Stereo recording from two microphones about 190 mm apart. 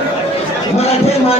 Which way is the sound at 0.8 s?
35° left (ahead or behind).